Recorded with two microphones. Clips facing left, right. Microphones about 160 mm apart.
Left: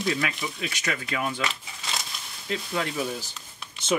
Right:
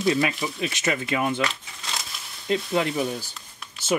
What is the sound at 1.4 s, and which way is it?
Shuffling cards, centre (ahead or behind).